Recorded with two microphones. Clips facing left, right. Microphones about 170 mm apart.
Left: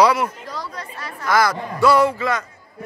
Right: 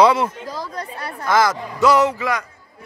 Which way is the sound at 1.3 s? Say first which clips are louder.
Right 1 dB; 20° right (ahead or behind).